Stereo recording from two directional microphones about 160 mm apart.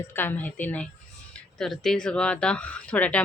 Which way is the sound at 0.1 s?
15° left (ahead or behind).